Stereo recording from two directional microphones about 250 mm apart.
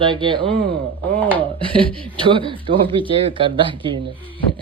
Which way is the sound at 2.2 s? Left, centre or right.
Centre.